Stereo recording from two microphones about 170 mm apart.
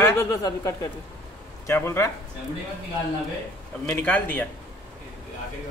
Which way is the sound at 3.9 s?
10° left (ahead or behind).